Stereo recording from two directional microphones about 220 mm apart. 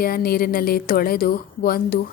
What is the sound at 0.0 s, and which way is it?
Speech, 45° left (ahead or behind).